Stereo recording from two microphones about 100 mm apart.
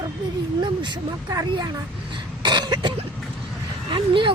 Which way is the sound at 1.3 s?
40° right (ahead or behind).